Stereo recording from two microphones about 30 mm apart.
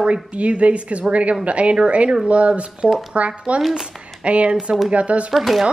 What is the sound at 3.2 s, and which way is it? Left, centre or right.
A woman's voice, right.